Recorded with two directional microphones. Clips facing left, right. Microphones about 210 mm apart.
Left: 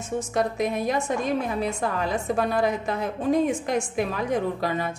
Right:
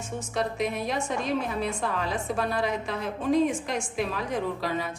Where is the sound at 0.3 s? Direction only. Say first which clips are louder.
Left 2 dB; 45° left (ahead or behind).